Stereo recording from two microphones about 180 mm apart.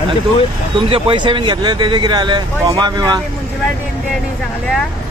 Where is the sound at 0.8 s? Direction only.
30° right (ahead or behind).